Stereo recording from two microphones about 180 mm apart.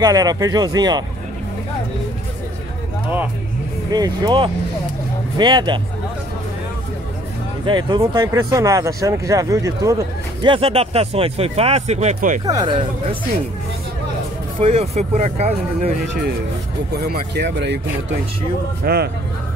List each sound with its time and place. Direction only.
0.0 s speech: 20° right (ahead or behind)
3.9 s speech: 20° right (ahead or behind)
7.6 s speech: 25° right (ahead or behind)
10.4 s speech: 30° right (ahead or behind)
12.4 s speech: 25° right (ahead or behind)
14.6 s speech: 35° right (ahead or behind)
16.9 s speech: 65° right (ahead or behind)
18.8 s speech: 55° right (ahead or behind)